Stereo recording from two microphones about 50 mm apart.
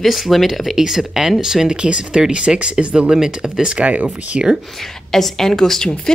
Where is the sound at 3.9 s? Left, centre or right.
Right.